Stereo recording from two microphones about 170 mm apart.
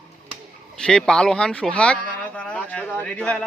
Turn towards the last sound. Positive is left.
turn(degrees=5)  # may be behind; listen again after turning